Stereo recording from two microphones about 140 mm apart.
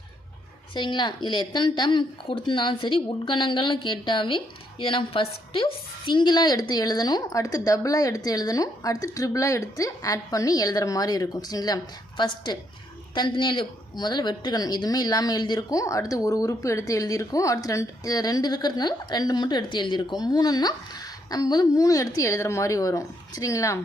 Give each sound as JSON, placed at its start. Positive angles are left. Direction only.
{"t": 0.7, "sound": "a woman's voice", "side_deg": 35}